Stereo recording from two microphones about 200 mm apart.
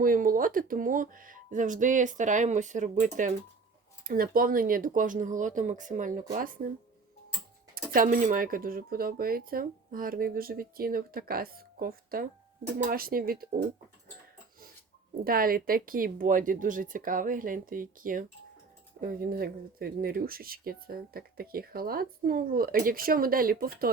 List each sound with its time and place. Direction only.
0.0 s speech: 45° right (ahead or behind)
7.9 s speech: 40° right (ahead or behind)
15.2 s speech: 45° right (ahead or behind)